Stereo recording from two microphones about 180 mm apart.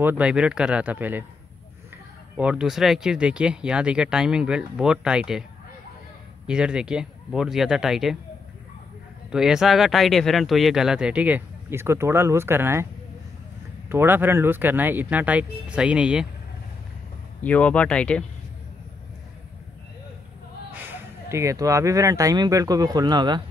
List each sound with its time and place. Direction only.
0.0 s speech: 10° right (ahead or behind)
2.3 s speech: 5° right (ahead or behind)
6.4 s speech: 5° right (ahead or behind)
9.3 s speech: 5° right (ahead or behind)
13.8 s speech: 10° right (ahead or behind)
17.4 s speech: 10° left (ahead or behind)
20.7 s speech: 10° right (ahead or behind)